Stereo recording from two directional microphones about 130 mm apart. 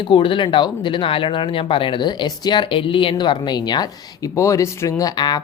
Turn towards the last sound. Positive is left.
turn(degrees=35)  # may be behind; listen again after turning